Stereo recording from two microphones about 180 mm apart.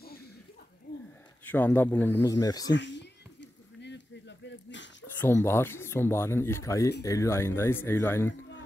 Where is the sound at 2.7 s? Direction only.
80° left.